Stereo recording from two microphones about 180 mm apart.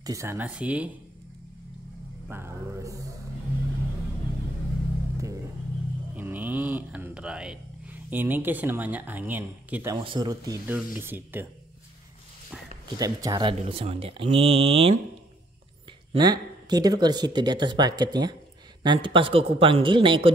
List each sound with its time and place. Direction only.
0.0 s speech: 15° right (ahead or behind)
2.2 s speech: 10° right (ahead or behind)
6.1 s a sound: 10° right (ahead or behind)
9.9 s speech: 25° right (ahead or behind)
10.7 s speech: 10° right (ahead or behind)
12.9 s speech: 20° right (ahead or behind)
16.1 s speech: 25° right (ahead or behind)